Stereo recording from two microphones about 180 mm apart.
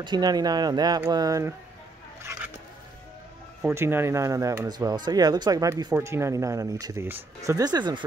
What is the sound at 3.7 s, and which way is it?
Speech, 15° right (ahead or behind).